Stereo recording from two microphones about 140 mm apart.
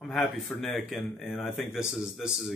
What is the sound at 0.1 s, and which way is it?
Speech, centre (ahead or behind).